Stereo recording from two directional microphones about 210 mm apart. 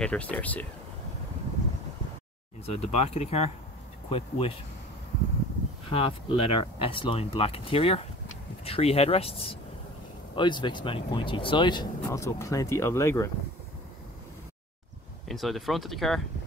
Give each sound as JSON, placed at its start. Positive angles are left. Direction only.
{"t": 0.0, "sound": "speech", "side_deg": 5}
{"t": 2.8, "sound": "speech", "side_deg": 30}
{"t": 5.9, "sound": "speech", "side_deg": 25}
{"t": 15.2, "sound": "speech", "side_deg": 0}